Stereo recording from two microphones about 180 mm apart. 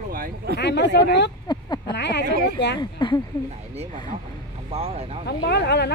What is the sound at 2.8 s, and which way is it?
Speech, 25° left (ahead or behind).